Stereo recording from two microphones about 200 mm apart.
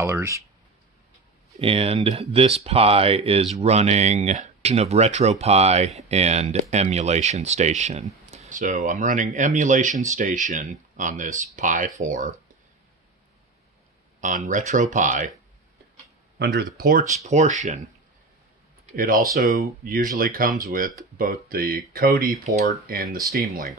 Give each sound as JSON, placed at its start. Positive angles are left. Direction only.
{"t": 0.0, "sound": "speech", "side_deg": -15}
{"t": 1.5, "sound": "speech", "side_deg": -30}
{"t": 14.2, "sound": "speech", "side_deg": -40}
{"t": 16.3, "sound": "speech", "side_deg": -55}
{"t": 17.2, "sound": "speech", "side_deg": -35}
{"t": 18.9, "sound": "speech", "side_deg": -45}